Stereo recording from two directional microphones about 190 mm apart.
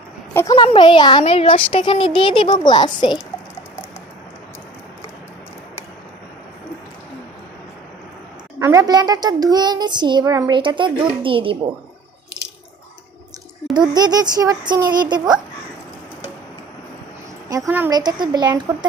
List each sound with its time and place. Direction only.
0.5 s a woman's voice: 25° left (ahead or behind)
8.5 s speech: 15° right (ahead or behind)
13.7 s speech: 20° right (ahead or behind)
17.7 s a woman's voice: 10° right (ahead or behind)
17.9 s speech: 20° right (ahead or behind)